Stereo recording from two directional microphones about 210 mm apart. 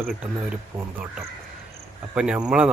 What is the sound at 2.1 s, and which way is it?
Speech, 5° right (ahead or behind).